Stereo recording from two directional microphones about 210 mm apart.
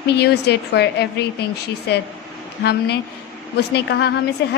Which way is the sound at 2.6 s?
50° left (ahead or behind).